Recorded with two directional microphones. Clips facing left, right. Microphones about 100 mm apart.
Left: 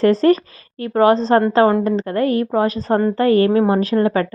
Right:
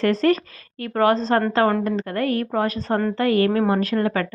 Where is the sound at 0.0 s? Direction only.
30° left (ahead or behind).